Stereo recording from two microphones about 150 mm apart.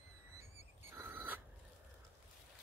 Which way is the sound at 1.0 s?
15° right (ahead or behind).